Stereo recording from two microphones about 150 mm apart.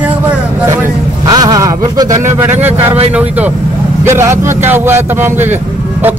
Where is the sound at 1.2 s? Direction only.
25° right (ahead or behind).